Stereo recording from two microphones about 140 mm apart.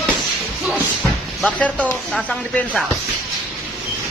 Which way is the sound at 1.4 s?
10° left (ahead or behind).